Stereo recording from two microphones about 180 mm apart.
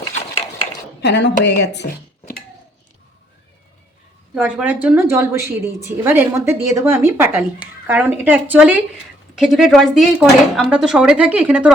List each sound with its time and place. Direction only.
1.0 s speech: 70° left (ahead or behind)
4.4 s a woman's voice: 10° right (ahead or behind)